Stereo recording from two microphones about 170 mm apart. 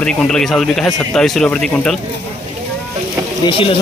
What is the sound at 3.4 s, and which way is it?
Speech, 30° left (ahead or behind).